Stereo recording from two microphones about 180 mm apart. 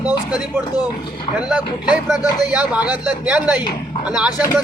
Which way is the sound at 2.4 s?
10° right (ahead or behind).